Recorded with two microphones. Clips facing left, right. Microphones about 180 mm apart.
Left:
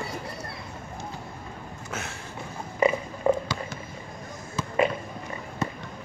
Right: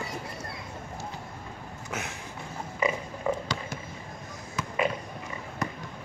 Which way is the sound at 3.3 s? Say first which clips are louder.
Left 6 dB; 40° left (ahead or behind).